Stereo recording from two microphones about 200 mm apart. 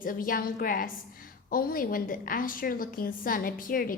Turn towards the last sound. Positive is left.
turn(degrees=45)  # may be behind; listen again after turning